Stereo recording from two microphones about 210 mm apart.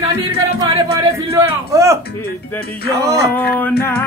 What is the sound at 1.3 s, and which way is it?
Speech, 15° right (ahead or behind).